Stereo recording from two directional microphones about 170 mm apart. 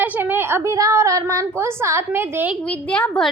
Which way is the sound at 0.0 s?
10° right (ahead or behind).